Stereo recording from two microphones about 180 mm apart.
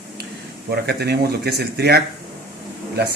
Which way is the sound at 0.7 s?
65° right (ahead or behind).